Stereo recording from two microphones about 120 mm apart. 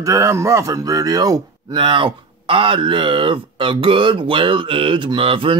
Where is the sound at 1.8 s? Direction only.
45° right (ahead or behind).